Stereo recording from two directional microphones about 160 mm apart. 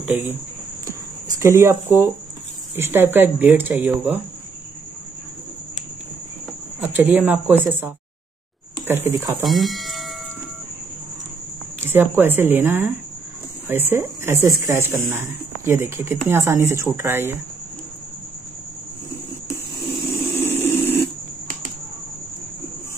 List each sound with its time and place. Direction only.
0.0 s speech: 10° right (ahead or behind)
1.4 s speech: 15° right (ahead or behind)
6.8 s speech: 10° right (ahead or behind)
9.4 s speech: centre (ahead or behind)
11.8 s speech: 15° right (ahead or behind)
20.3 s a sound: 15° left (ahead or behind)